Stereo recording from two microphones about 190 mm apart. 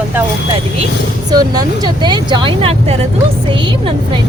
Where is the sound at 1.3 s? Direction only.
20° right (ahead or behind).